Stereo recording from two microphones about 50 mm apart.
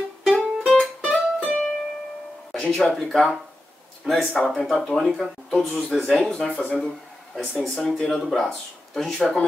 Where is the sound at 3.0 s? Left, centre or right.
Centre.